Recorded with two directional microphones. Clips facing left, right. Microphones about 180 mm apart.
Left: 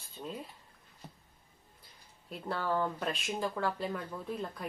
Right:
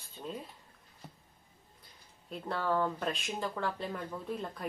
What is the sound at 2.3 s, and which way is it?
Speech, centre (ahead or behind).